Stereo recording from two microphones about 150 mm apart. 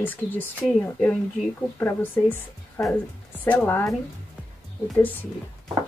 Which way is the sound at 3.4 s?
15° left (ahead or behind).